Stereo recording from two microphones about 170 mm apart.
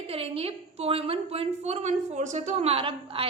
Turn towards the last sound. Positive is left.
turn(degrees=-35)  # may be behind; listen again after turning